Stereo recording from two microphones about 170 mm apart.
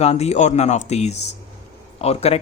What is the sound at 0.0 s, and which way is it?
A man's voice, 40° left (ahead or behind).